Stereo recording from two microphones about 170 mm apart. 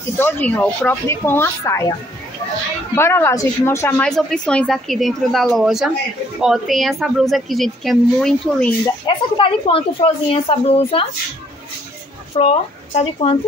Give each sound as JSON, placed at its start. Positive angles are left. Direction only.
{"t": 0.2, "sound": "speech", "side_deg": 10}
{"t": 3.0, "sound": "a woman's voice", "side_deg": 15}
{"t": 9.0, "sound": "speech", "side_deg": 30}
{"t": 12.4, "sound": "speech", "side_deg": 40}